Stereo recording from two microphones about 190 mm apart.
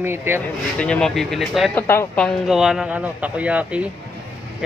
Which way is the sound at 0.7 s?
5° left (ahead or behind).